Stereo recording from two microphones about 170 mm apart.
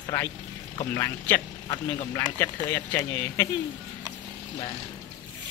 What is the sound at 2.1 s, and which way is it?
Speech, 15° left (ahead or behind).